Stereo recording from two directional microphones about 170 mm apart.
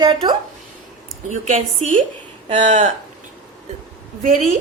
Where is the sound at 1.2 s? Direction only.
45° right (ahead or behind).